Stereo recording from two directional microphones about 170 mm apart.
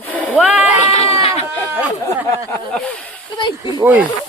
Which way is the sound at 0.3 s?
5° right (ahead or behind).